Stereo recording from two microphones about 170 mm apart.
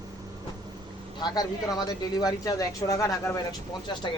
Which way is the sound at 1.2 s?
25° left (ahead or behind).